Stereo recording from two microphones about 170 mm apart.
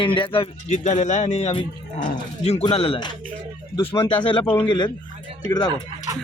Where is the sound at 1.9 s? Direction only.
50° left (ahead or behind); by 5.7 s 25° left (ahead or behind).